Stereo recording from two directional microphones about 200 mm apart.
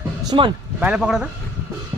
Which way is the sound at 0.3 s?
25° right (ahead or behind).